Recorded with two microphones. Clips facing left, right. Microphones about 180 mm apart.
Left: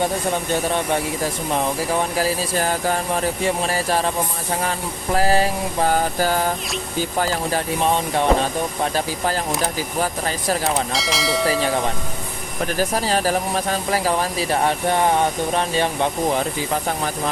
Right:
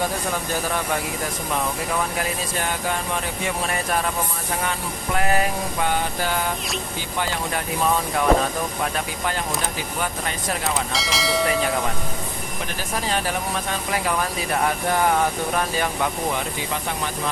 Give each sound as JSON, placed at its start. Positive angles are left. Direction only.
{"t": 0.5, "sound": "speech", "side_deg": 25}
{"t": 5.1, "sound": "speech", "side_deg": 30}
{"t": 10.9, "sound": "speech", "side_deg": 0}
{"t": 12.8, "sound": "speech", "side_deg": 35}